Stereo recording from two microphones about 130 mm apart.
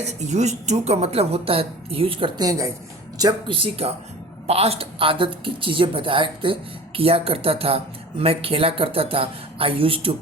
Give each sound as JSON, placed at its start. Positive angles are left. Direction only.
{"t": 0.0, "sound": "a woman's voice", "side_deg": -60}